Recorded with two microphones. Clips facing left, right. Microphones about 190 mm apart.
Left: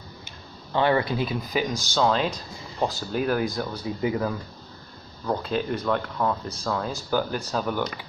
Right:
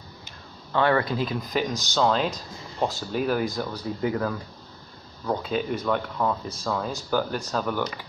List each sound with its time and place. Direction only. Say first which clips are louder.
0.7 s speech: even; 25° left (ahead or behind)
1.1 s speech: even; 5° left (ahead or behind)
5.2 s speech: even; centre (ahead or behind)